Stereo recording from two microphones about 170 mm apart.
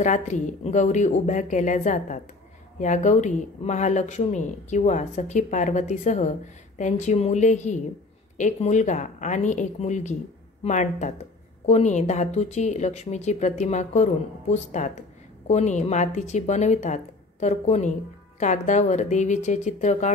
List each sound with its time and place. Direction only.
0.0 s a woman's voice: 45° left (ahead or behind)